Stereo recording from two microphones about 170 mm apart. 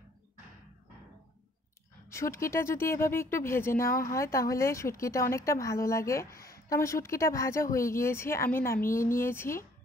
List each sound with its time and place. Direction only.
2.0 s speech: 15° left (ahead or behind)